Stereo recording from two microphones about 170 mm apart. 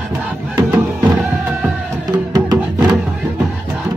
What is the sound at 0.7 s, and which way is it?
Music, 10° right (ahead or behind).